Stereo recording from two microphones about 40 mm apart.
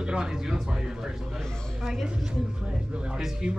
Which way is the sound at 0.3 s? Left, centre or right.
Centre.